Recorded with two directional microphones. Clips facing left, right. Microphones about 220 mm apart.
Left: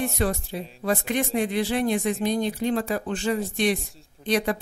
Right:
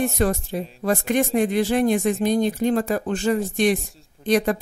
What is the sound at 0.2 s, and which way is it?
A woman's voice, 45° right (ahead or behind).